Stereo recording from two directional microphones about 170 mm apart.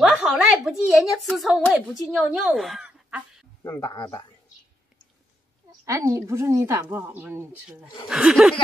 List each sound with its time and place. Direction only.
0.0 s speech: 5° right (ahead or behind)
3.6 s speech: 20° left (ahead or behind)
5.9 s speech: 15° right (ahead or behind)